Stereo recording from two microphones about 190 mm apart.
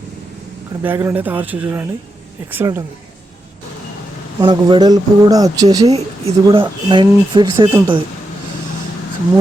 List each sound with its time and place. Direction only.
0.8 s speech: 10° right (ahead or behind)
4.4 s speech: 25° right (ahead or behind)